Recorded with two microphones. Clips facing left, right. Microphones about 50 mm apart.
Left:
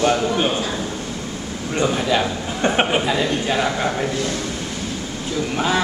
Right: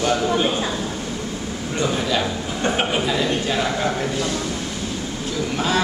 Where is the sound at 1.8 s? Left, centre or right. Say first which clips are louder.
Left 2 dB; centre.